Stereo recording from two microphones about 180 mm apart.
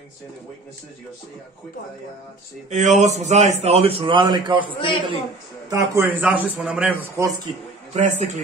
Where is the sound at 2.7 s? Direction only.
40° right (ahead or behind).